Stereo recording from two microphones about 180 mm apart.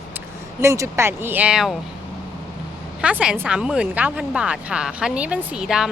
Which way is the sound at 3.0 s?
5° right (ahead or behind).